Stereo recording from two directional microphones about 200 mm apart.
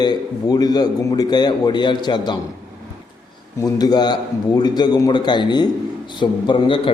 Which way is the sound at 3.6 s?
20° left (ahead or behind).